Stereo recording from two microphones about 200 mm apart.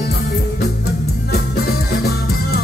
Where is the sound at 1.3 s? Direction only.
55° left (ahead or behind).